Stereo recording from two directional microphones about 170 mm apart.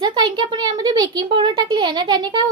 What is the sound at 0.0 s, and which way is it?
A woman's voice, 25° right (ahead or behind).